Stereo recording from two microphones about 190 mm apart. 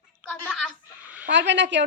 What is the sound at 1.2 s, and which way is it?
Speech, 70° right (ahead or behind).